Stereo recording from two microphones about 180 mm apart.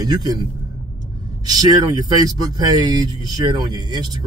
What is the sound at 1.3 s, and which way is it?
Speech, 20° right (ahead or behind).